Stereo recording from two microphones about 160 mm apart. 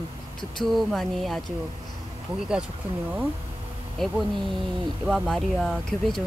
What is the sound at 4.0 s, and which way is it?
Speech, centre (ahead or behind).